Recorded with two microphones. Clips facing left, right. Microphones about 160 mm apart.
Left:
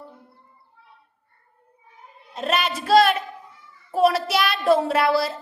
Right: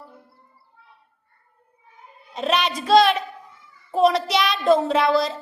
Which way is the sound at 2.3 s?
Centre (ahead or behind).